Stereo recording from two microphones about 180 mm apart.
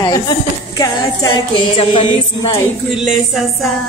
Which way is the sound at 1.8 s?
30° left (ahead or behind).